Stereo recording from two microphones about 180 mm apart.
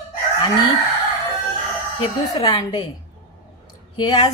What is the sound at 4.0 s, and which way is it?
Speech, 25° left (ahead or behind).